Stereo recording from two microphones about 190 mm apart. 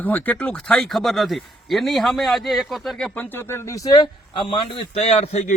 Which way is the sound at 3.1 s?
10° left (ahead or behind).